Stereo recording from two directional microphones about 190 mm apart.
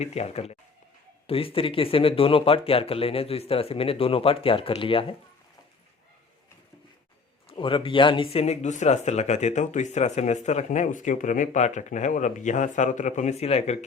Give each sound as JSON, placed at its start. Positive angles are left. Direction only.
{"t": 0.0, "sound": "speech", "side_deg": 35}
{"t": 7.4, "sound": "speech", "side_deg": 25}